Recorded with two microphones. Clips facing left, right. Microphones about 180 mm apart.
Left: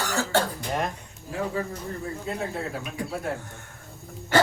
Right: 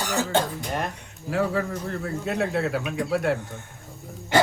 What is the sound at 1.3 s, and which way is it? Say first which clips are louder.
Speech: right 5 dB; 75° right (ahead or behind).